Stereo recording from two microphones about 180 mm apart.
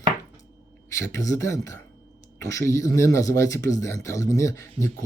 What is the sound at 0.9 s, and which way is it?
Speech, 20° left (ahead or behind).